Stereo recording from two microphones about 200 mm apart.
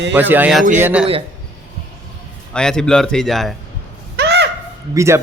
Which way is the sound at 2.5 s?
5° left (ahead or behind).